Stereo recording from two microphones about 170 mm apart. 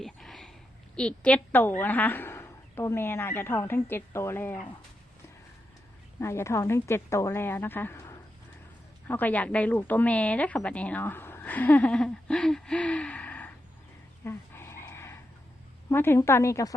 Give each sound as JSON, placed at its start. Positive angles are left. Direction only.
{"t": 0.0, "sound": "a sound", "side_deg": 0}
{"t": 0.9, "sound": "a woman's voice", "side_deg": 5}
{"t": 6.1, "sound": "a woman's voice", "side_deg": 15}
{"t": 14.3, "sound": "dog", "side_deg": 15}
{"t": 15.9, "sound": "a woman's voice", "side_deg": 15}